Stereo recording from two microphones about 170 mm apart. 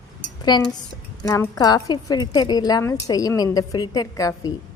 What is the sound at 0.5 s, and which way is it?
A woman's voice, 25° left (ahead or behind).